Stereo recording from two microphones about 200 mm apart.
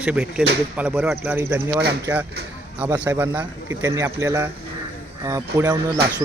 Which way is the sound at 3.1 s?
10° right (ahead or behind).